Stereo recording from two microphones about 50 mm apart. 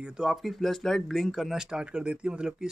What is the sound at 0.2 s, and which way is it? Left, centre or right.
Speech, centre.